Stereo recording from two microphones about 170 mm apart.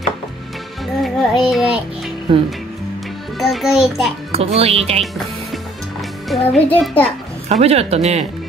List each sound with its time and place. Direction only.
1.0 s music: centre (ahead or behind)
2.3 s speech: 30° right (ahead or behind)
3.3 s a child's voice: centre (ahead or behind)
4.3 s speech: 35° right (ahead or behind)
6.2 s a child's voice: centre (ahead or behind)
7.4 s speech: 40° right (ahead or behind)